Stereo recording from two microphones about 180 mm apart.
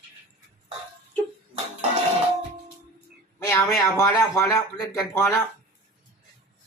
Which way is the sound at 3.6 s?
Centre (ahead or behind).